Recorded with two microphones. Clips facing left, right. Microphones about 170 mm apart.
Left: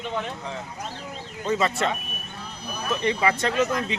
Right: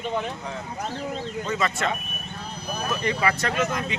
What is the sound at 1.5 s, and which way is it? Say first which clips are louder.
A man's voice: left 3 dB; 30° left (ahead or behind).